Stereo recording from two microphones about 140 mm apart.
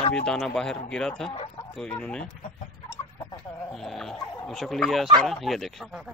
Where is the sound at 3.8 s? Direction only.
5° left (ahead or behind).